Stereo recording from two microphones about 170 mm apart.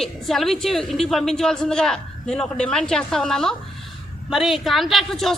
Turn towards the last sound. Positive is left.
turn(degrees=0)  # may be behind; listen again after turning